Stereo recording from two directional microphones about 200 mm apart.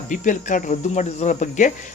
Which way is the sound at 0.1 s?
40° left (ahead or behind).